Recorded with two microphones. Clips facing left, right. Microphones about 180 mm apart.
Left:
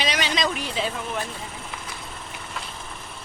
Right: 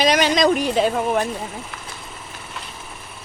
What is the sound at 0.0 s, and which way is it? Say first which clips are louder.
Speech: right 9 dB; 45° right (ahead or behind).